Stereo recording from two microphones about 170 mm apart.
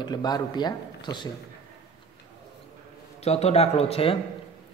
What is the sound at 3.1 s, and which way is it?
Speech, 40° left (ahead or behind).